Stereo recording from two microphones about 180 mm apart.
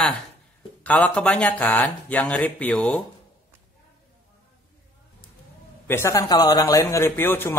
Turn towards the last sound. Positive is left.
turn(degrees=10)  # may be behind; listen again after turning